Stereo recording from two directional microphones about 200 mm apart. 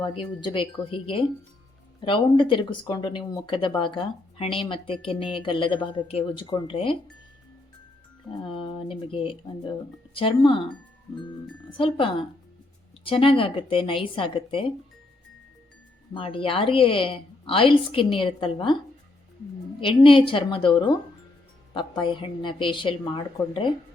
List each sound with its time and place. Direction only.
0.0 s a woman's voice: 25° left (ahead or behind)
8.4 s a woman's voice: 25° left (ahead or behind)
11.8 s a woman's voice: 25° left (ahead or behind)
16.1 s a woman's voice: 25° left (ahead or behind)
19.8 s a woman's voice: 25° left (ahead or behind)